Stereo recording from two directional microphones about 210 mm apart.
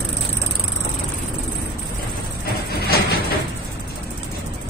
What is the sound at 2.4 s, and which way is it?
Vehicle, 45° left (ahead or behind).